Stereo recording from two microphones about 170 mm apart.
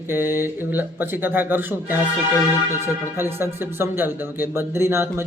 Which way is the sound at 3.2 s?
15° right (ahead or behind).